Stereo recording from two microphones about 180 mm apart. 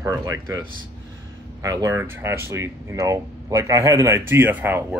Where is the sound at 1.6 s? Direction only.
20° right (ahead or behind).